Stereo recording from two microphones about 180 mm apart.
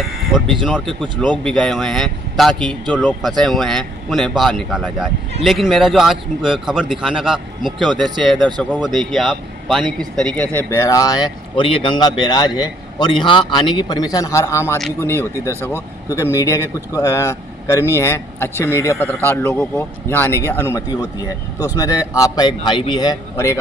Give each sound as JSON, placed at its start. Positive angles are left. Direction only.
{"t": 0.7, "sound": "speech", "side_deg": 0}